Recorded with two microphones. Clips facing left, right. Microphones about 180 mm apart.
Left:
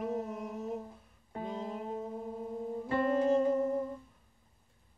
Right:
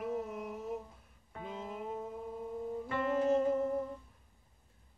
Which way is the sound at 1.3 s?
35° left (ahead or behind).